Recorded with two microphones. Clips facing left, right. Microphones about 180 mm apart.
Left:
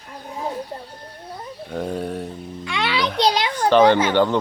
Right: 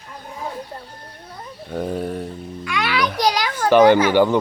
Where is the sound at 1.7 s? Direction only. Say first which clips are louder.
Right 2 dB; 5° right (ahead or behind).